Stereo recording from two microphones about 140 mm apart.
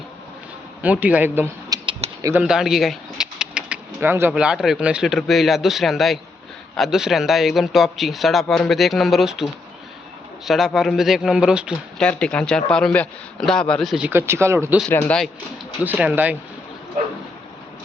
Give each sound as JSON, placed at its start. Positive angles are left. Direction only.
{"t": 0.8, "sound": "a man's voice", "side_deg": -10}
{"t": 1.7, "sound": "a sound", "side_deg": -25}
{"t": 2.4, "sound": "speech", "side_deg": -5}
{"t": 11.9, "sound": "speech", "side_deg": 5}
{"t": 14.1, "sound": "a man's voice", "side_deg": -15}
{"t": 14.8, "sound": "speech", "side_deg": 10}
{"t": 15.8, "sound": "a man's voice", "side_deg": -10}